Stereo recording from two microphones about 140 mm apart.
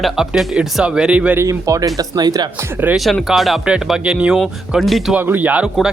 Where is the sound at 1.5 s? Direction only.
25° right (ahead or behind).